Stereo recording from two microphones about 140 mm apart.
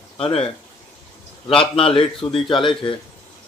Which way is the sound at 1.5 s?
40° left (ahead or behind).